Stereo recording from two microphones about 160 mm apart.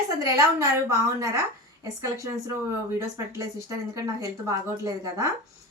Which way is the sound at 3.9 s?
20° right (ahead or behind).